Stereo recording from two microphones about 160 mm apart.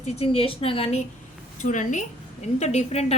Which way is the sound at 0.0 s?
40° left (ahead or behind).